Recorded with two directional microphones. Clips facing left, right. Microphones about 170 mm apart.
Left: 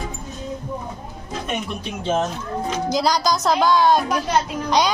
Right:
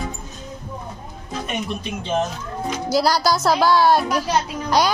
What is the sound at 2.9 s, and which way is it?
Speech, 5° right (ahead or behind).